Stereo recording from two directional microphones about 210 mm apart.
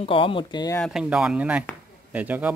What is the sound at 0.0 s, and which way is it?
Speech, 25° left (ahead or behind).